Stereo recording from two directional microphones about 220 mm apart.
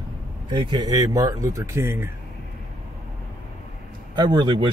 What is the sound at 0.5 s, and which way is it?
Speech, 20° right (ahead or behind).